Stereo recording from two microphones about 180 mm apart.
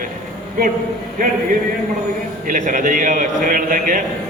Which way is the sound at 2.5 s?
45° right (ahead or behind).